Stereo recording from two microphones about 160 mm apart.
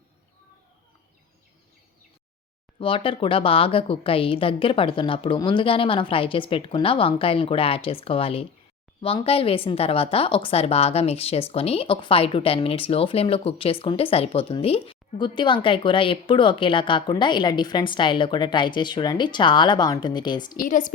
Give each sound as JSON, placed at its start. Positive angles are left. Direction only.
{"t": 2.7, "sound": "speech", "side_deg": 35}
{"t": 20.6, "sound": "a woman's voice", "side_deg": 55}